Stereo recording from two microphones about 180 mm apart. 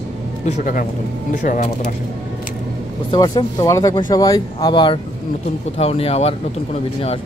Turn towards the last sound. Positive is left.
turn(degrees=35)  # may be behind; listen again after turning